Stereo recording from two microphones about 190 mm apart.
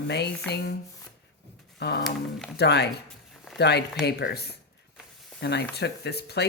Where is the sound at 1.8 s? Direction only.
60° left (ahead or behind).